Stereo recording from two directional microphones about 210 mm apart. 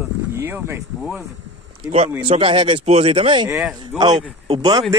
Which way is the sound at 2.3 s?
25° right (ahead or behind).